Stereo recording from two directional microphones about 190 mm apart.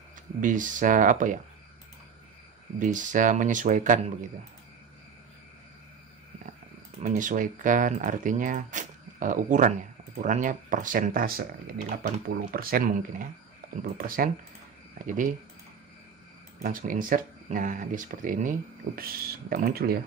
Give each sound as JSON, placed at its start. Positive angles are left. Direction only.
{"t": 0.4, "sound": "speech", "side_deg": -45}
{"t": 2.8, "sound": "speech", "side_deg": -40}
{"t": 7.0, "sound": "speech", "side_deg": -40}
{"t": 16.6, "sound": "speech", "side_deg": -45}